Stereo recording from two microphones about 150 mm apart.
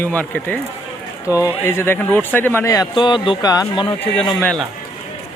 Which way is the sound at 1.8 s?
10° left (ahead or behind).